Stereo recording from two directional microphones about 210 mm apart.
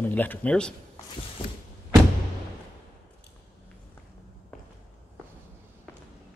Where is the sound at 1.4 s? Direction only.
25° left (ahead or behind).